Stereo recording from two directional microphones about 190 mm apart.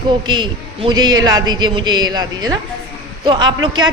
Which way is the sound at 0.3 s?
25° right (ahead or behind).